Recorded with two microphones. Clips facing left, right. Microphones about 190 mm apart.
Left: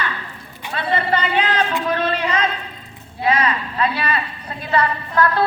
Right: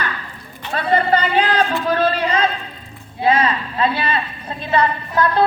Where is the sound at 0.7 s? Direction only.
40° right (ahead or behind).